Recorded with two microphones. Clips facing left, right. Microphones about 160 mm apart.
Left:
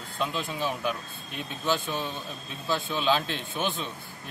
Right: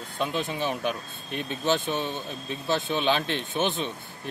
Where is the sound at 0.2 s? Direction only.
20° right (ahead or behind).